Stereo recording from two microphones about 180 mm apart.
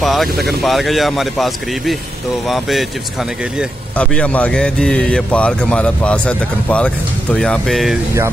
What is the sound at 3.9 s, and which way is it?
Speech, 5° left (ahead or behind).